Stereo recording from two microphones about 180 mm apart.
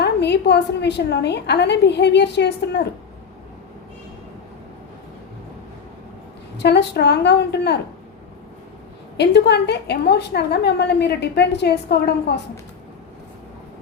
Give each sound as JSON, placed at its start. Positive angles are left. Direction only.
{"t": 0.0, "sound": "a woman's voice", "side_deg": 70}
{"t": 6.6, "sound": "a woman's voice", "side_deg": 70}
{"t": 9.1, "sound": "a woman's voice", "side_deg": 70}